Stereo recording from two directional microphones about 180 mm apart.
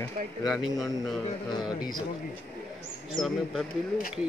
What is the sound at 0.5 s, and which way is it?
Speech, centre (ahead or behind).